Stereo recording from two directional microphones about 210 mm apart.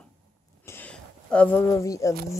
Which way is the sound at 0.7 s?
5° left (ahead or behind).